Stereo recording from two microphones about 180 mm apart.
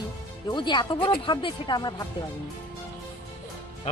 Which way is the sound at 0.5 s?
25° left (ahead or behind).